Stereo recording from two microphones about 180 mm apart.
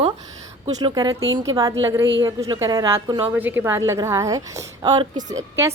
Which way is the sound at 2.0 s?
90° right.